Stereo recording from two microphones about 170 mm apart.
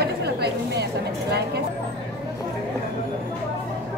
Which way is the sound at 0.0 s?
70° right (ahead or behind).